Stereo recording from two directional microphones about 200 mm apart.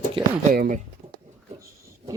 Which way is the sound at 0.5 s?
40° right (ahead or behind).